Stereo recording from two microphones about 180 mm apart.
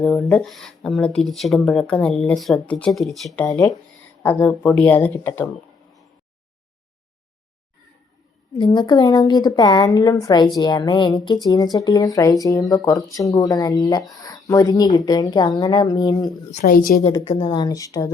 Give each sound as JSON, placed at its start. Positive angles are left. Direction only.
{"t": 0.0, "sound": "speech", "side_deg": 5}
{"t": 4.2, "sound": "speech", "side_deg": 10}
{"t": 8.5, "sound": "a woman's voice", "side_deg": 25}
{"t": 16.5, "sound": "a woman's voice", "side_deg": 45}
{"t": 17.1, "sound": "a woman's voice", "side_deg": 25}